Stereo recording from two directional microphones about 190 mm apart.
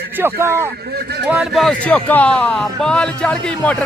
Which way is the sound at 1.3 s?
Centre (ahead or behind).